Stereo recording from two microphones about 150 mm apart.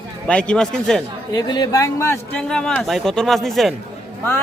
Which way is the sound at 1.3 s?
25° left (ahead or behind).